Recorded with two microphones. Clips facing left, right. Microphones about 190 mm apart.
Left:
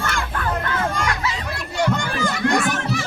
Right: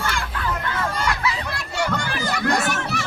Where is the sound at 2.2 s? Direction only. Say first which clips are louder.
Even; 35° right (ahead or behind).